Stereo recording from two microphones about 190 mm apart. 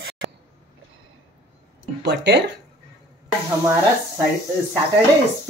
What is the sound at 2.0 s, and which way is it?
Speech, 65° right (ahead or behind).